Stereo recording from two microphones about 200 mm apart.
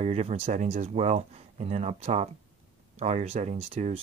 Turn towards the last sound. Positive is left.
turn(degrees=-30)  # may be behind; listen again after turning